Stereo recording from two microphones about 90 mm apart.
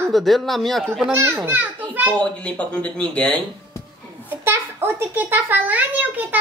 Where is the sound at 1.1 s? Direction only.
30° right (ahead or behind).